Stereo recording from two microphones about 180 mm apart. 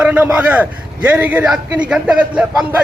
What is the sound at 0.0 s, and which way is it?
A man's voice, 10° right (ahead or behind).